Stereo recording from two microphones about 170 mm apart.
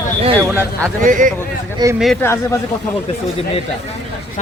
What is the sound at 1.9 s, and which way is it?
Speech, centre (ahead or behind).